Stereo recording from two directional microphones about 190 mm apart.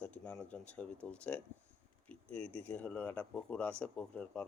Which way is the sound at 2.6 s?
5° left (ahead or behind).